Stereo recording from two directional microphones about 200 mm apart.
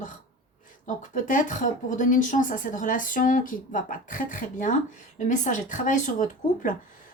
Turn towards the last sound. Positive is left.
turn(degrees=40)  # may be behind; listen again after turning